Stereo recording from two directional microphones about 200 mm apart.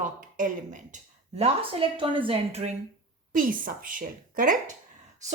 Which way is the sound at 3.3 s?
45° right (ahead or behind).